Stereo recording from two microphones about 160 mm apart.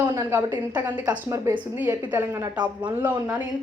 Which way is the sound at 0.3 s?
10° right (ahead or behind).